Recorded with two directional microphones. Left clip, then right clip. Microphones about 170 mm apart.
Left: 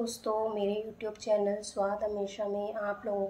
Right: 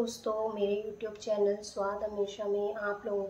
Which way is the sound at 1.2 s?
25° left (ahead or behind).